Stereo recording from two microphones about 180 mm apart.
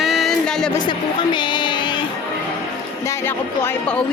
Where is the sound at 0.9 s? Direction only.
25° left (ahead or behind).